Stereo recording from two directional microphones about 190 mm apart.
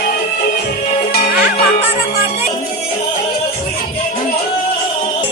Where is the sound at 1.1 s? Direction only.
50° left (ahead or behind).